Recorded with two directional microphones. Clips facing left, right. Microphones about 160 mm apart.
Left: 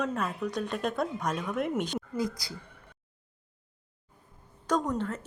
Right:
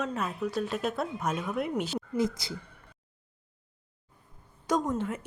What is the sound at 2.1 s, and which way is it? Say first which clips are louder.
Speech: right 4 dB; 25° right (ahead or behind).